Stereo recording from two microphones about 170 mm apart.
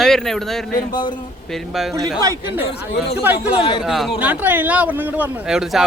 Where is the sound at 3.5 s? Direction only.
35° left (ahead or behind).